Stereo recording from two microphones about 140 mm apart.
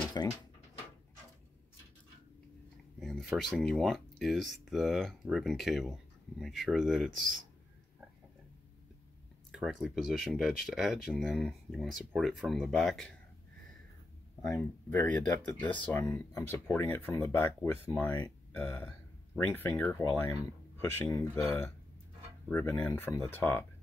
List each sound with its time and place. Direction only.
0.2 s a sound: 25° left (ahead or behind)
3.0 s speech: centre (ahead or behind)
9.5 s speech: centre (ahead or behind)
14.5 s speech: 15° left (ahead or behind)
15.6 s speech: 35° left (ahead or behind)
15.9 s speech: 15° left (ahead or behind)